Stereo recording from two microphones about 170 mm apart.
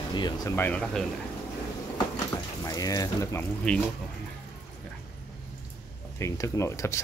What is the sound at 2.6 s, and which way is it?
Speech, 20° left (ahead or behind).